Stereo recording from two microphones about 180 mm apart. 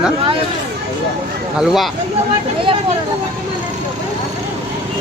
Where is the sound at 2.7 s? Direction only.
30° right (ahead or behind).